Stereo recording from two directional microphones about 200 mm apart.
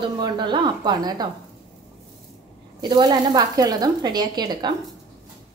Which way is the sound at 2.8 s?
20° right (ahead or behind).